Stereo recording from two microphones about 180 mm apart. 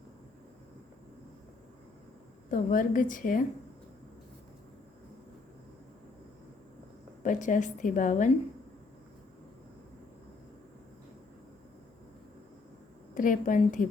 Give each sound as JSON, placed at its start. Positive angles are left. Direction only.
{"t": 2.5, "sound": "a woman's voice", "side_deg": 50}
{"t": 7.2, "sound": "a woman's voice", "side_deg": 45}
{"t": 13.1, "sound": "a woman's voice", "side_deg": 45}